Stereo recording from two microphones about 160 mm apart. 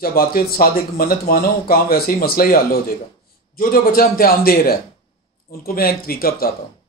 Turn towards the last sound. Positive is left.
turn(degrees=70)  # may be behind; listen again after turning